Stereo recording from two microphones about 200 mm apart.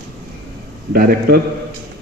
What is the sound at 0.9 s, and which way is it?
Speech, 50° right (ahead or behind).